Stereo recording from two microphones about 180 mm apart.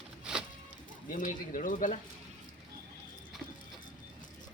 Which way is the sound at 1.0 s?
45° left (ahead or behind).